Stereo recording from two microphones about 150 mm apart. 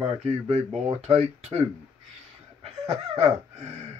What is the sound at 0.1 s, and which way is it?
Speech, 45° right (ahead or behind).